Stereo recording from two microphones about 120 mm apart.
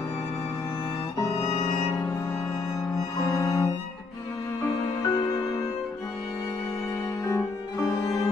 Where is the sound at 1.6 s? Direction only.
20° left (ahead or behind).